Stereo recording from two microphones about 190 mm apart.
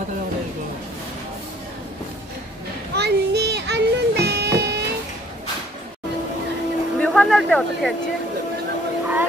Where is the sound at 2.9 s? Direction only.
60° right (ahead or behind).